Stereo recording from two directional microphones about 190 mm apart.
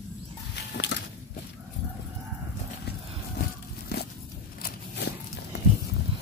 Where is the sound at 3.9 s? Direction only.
55° left (ahead or behind).